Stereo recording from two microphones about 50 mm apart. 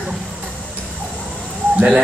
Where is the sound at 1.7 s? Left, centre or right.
Right.